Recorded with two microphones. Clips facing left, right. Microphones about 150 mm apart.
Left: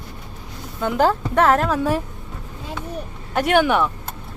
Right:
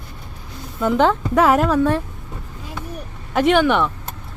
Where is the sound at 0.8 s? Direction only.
Centre (ahead or behind).